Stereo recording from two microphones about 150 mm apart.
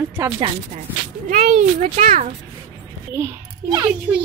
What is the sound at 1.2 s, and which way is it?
Speech, 65° right (ahead or behind).